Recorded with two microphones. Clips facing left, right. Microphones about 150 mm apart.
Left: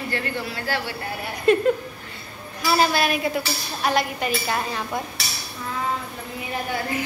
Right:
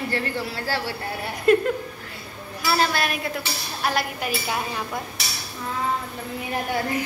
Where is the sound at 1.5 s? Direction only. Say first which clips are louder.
Left 1 dB; 5° right (ahead or behind).